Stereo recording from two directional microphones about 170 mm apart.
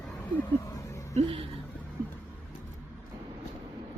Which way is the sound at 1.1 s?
35° right (ahead or behind).